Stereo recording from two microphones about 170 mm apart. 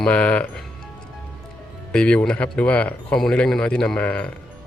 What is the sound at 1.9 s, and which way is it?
Speech, 5° left (ahead or behind).